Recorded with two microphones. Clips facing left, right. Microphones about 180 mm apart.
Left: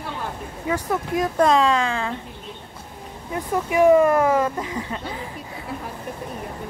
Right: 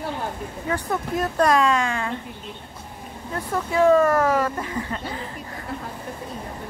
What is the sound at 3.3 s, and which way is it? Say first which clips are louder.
Speech: left 2 dB; 15° left (ahead or behind).